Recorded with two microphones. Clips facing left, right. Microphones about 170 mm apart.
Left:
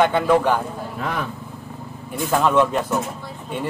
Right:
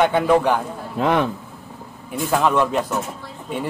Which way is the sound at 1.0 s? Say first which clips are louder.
Right 9 dB; 75° right (ahead or behind).